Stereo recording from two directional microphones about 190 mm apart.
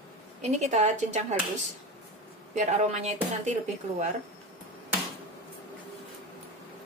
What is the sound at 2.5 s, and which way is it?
Speech, 40° right (ahead or behind).